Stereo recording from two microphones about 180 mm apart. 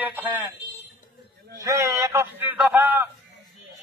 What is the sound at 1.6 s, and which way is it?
A man's voice, 15° right (ahead or behind).